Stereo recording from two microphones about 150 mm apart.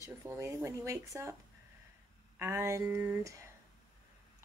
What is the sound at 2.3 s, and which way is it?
Speech, 15° right (ahead or behind).